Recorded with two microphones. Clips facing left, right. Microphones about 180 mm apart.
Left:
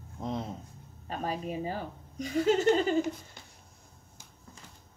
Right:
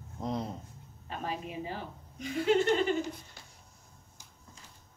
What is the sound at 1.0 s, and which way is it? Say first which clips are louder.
A woman's voice: left 3 dB; 40° left (ahead or behind).